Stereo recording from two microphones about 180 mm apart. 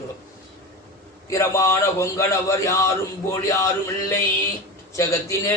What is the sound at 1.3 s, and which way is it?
A man's voice, 15° left (ahead or behind).